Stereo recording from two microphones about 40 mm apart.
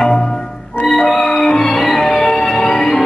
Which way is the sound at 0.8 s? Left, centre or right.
Centre.